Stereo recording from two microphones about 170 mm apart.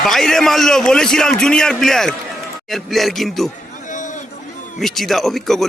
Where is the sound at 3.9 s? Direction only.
45° left (ahead or behind).